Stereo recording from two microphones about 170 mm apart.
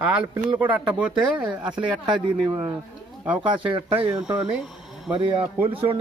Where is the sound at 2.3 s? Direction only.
10° right (ahead or behind).